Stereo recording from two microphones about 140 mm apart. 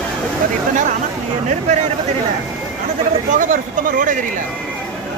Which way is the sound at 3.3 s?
65° right (ahead or behind).